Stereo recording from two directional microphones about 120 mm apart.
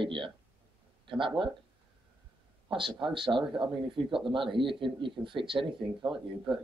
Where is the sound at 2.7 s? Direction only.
45° right (ahead or behind).